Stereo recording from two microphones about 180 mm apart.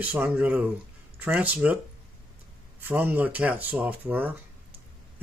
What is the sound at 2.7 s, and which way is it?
Speech, 10° right (ahead or behind).